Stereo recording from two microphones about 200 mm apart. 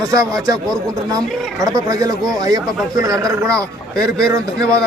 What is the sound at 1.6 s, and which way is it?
Speech, 15° right (ahead or behind).